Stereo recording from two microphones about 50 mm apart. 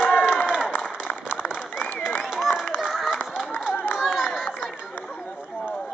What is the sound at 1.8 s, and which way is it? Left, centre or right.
Applause, left.